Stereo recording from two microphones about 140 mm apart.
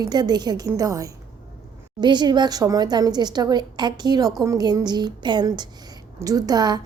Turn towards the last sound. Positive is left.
turn(degrees=-30)  # may be behind; listen again after turning